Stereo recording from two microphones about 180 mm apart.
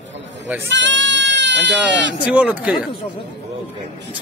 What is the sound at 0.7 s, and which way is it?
Speech, 90° right.